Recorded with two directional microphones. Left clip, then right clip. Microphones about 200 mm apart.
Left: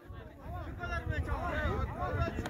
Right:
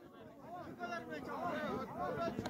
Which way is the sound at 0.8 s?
10° left (ahead or behind).